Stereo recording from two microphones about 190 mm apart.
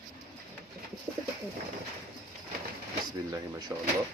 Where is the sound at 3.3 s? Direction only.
20° right (ahead or behind).